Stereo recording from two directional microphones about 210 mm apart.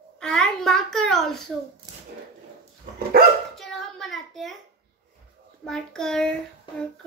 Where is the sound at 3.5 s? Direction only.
Centre (ahead or behind).